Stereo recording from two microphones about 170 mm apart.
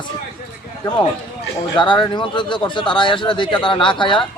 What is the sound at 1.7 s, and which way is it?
Speech, 25° left (ahead or behind).